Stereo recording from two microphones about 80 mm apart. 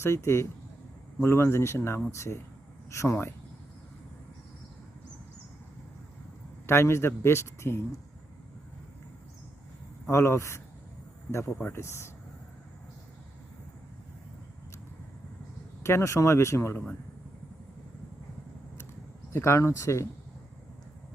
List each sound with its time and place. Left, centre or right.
0.0 s a man's voice: left
6.7 s a man's voice: left
10.1 s a man's voice: left
15.8 s a man's voice: left
19.3 s a man's voice: left